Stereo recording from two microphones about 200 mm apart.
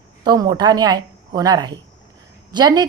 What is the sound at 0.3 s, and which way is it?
A woman's voice, 20° right (ahead or behind).